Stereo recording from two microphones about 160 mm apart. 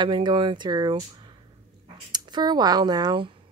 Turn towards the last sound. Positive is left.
turn(degrees=-25)  # may be behind; listen again after turning